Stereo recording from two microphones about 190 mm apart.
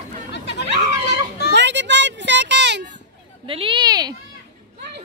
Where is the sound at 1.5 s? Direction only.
70° right (ahead or behind).